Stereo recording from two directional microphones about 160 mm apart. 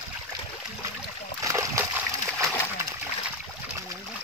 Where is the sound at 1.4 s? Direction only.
20° right (ahead or behind).